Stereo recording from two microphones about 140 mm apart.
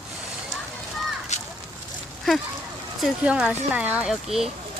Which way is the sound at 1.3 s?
55° left (ahead or behind).